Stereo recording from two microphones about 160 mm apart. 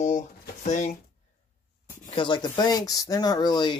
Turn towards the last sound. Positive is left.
turn(degrees=25)  # may be behind; listen again after turning